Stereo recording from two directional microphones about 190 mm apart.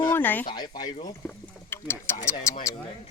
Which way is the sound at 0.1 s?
10° left (ahead or behind).